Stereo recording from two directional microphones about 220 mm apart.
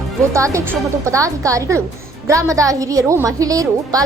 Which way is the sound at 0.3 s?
15° right (ahead or behind).